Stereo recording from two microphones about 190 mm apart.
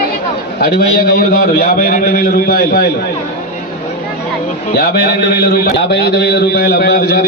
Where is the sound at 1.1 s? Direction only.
55° left (ahead or behind).